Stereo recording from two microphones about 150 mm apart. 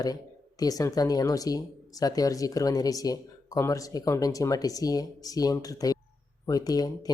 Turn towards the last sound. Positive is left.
turn(degrees=25)  # may be behind; listen again after turning